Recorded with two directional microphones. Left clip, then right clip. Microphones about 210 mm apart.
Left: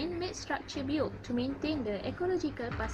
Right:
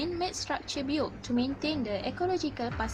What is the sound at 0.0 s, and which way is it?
A woman's voice, 45° right (ahead or behind).